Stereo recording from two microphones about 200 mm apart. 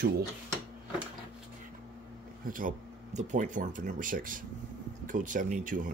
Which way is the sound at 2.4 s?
40° right (ahead or behind).